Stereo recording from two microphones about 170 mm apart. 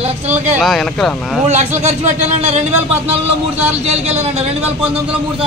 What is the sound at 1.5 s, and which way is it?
Speech, 40° right (ahead or behind).